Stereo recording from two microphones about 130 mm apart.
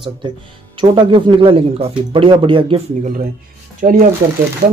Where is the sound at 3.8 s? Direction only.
90° right.